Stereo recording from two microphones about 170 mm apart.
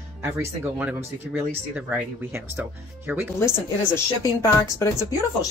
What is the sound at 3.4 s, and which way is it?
A woman's voice, 15° left (ahead or behind).